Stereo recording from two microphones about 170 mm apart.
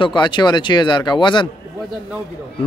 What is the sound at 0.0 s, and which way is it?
Speech, 30° left (ahead or behind).